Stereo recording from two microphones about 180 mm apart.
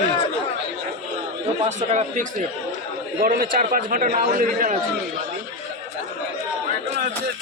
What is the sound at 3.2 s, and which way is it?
A man's voice, 55° right (ahead or behind).